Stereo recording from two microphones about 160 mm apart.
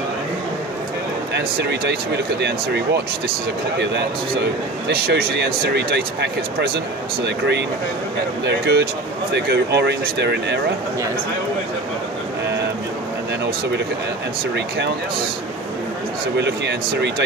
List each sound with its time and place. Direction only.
1.3 s a man's voice: 90° right
16.3 s a man's voice: 90° right